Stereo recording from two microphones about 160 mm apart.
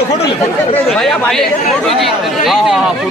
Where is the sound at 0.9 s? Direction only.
5° left (ahead or behind).